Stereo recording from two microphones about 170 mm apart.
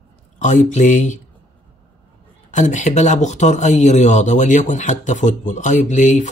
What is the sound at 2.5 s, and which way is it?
Speech, 45° left (ahead or behind).